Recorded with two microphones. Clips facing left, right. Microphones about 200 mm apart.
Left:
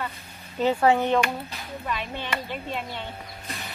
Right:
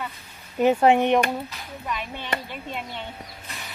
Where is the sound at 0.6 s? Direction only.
15° right (ahead or behind).